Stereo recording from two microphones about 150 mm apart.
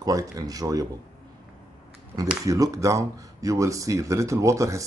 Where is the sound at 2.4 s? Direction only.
25° right (ahead or behind).